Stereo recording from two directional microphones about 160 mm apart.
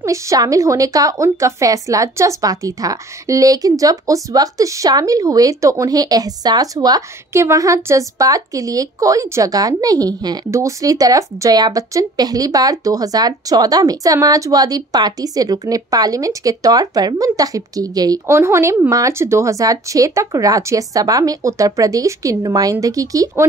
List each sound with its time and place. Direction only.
0.0 s a woman's voice: 20° right (ahead or behind)